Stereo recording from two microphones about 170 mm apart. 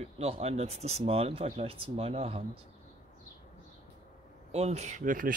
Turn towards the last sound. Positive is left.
turn(degrees=-50)  # may be behind; listen again after turning